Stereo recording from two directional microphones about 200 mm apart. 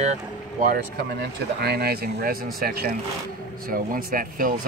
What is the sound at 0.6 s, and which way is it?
Speech, 45° right (ahead or behind).